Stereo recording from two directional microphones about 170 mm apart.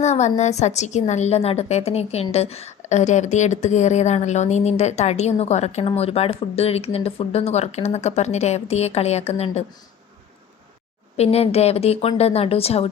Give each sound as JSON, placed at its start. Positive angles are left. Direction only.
{"t": 0.0, "sound": "speech", "side_deg": 40}
{"t": 11.2, "sound": "speech", "side_deg": 35}